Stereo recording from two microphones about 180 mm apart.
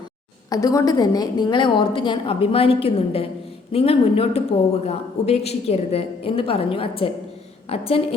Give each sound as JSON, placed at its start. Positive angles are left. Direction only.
{"t": 0.5, "sound": "a woman's voice", "side_deg": 20}